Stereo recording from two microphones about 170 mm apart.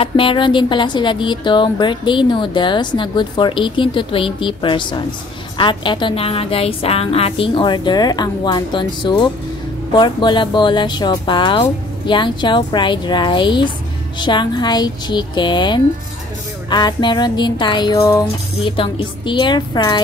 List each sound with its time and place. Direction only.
0.0 s a woman's voice: 30° left (ahead or behind)
18.6 s a woman's voice: 30° left (ahead or behind)